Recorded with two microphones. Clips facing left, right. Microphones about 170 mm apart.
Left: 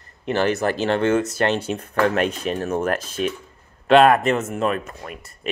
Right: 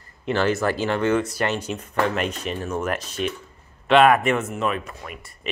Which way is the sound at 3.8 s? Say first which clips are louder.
Left 2 dB; 35° left (ahead or behind).